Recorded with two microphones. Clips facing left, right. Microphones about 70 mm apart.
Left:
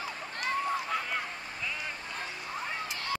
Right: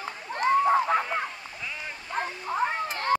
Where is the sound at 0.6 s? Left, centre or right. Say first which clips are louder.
Right 9 dB; right.